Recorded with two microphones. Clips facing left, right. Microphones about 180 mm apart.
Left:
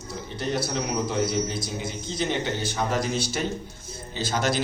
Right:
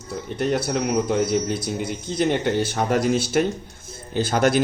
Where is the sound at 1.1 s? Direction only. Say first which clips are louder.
Right 5 dB; 55° right (ahead or behind).